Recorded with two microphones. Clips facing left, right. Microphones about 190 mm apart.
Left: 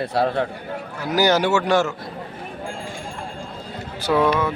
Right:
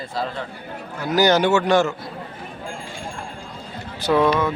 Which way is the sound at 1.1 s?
10° left (ahead or behind).